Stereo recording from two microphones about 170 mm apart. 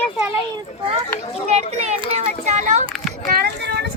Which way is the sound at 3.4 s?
75° right (ahead or behind).